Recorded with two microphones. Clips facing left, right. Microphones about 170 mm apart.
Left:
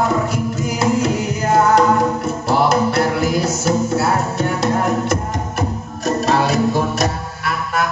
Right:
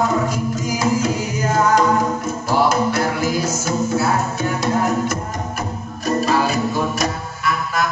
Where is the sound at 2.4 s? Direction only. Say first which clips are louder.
Left 2 dB; 65° left (ahead or behind).